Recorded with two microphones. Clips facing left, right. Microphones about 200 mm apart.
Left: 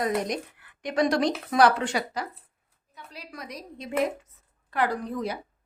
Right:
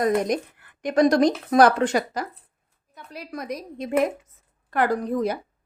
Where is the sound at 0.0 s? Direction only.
45° right (ahead or behind).